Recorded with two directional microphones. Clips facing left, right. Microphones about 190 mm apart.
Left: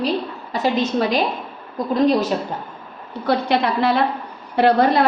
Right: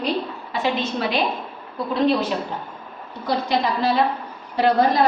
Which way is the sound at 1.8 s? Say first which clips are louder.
Left 4 dB; 45° left (ahead or behind).